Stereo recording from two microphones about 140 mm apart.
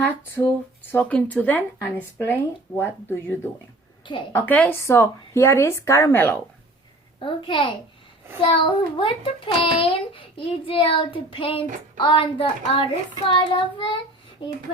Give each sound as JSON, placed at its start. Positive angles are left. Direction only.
{"t": 0.0, "sound": "speech", "side_deg": 15}
{"t": 4.0, "sound": "a woman's voice", "side_deg": 35}
{"t": 4.3, "sound": "speech", "side_deg": 15}
{"t": 7.2, "sound": "a child's voice", "side_deg": 40}